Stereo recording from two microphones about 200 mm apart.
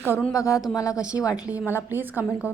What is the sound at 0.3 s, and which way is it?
Speech, 15° left (ahead or behind).